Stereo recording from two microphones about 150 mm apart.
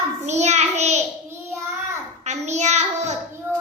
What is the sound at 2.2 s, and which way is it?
Child singing, 50° right (ahead or behind).